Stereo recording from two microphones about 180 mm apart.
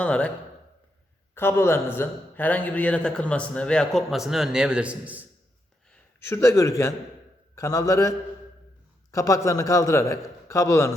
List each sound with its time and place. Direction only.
0.0 s a man's voice: 5° left (ahead or behind)
1.4 s a man's voice: 10° left (ahead or behind); by 5.2 s 5° right (ahead or behind)
6.1 s a man's voice: 15° left (ahead or behind)
9.1 s a man's voice: 20° left (ahead or behind)